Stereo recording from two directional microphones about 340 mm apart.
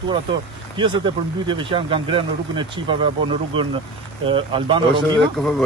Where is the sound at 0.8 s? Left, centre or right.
Centre.